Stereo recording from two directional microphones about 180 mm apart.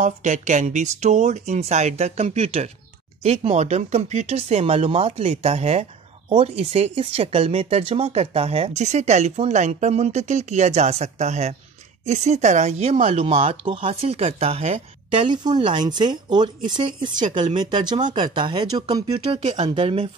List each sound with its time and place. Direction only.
0.0 s speech: 40° right (ahead or behind)
15.2 s speech: 25° right (ahead or behind)